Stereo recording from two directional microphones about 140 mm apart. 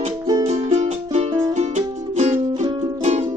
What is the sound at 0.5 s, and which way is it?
Music, 55° right (ahead or behind).